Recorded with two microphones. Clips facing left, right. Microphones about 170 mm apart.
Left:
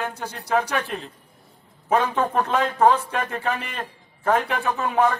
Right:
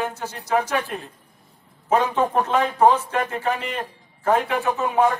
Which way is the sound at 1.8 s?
15° right (ahead or behind).